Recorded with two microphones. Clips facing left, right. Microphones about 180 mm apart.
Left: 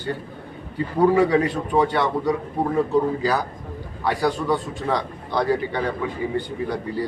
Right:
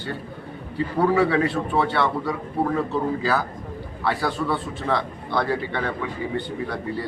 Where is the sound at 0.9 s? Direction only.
15° left (ahead or behind).